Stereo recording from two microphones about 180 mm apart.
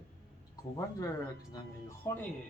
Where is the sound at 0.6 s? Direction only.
20° left (ahead or behind).